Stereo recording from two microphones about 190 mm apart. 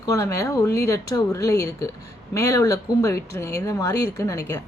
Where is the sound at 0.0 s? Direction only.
15° left (ahead or behind).